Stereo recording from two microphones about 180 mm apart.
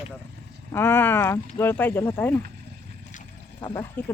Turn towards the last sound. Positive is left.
turn(degrees=10)  # may be behind; listen again after turning